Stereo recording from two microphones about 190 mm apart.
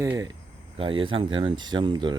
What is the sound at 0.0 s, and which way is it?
Speech, 15° right (ahead or behind).